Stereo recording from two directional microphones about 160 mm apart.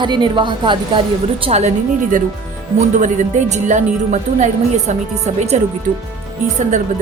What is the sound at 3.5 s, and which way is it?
A woman's voice, 50° right (ahead or behind).